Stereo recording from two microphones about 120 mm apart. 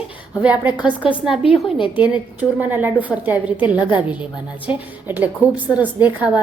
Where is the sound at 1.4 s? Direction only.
50° left (ahead or behind).